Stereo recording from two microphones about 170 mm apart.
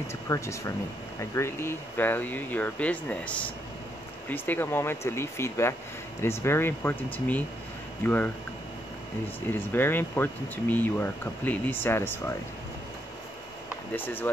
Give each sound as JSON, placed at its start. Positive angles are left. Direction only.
{"t": 0.3, "sound": "speech", "side_deg": 15}
{"t": 9.5, "sound": "speech", "side_deg": 10}
{"t": 13.9, "sound": "speech", "side_deg": 10}